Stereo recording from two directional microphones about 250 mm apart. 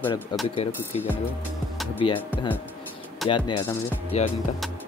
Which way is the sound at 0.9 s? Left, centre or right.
Left.